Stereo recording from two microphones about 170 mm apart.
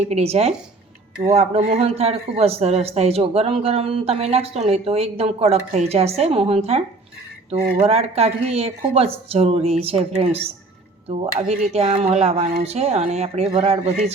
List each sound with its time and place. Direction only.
0.1 s a man's voice: 35° right (ahead or behind)